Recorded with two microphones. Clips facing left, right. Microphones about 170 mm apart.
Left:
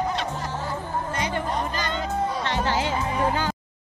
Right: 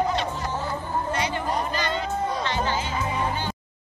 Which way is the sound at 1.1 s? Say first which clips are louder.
Right 2 dB; 45° left (ahead or behind).